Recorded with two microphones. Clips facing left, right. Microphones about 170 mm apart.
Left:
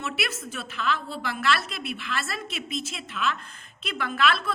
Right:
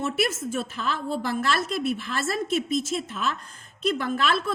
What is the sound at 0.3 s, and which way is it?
Speech, 20° right (ahead or behind).